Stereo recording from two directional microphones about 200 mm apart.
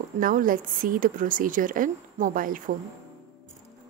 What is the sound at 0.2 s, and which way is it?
A woman's voice, 45° right (ahead or behind).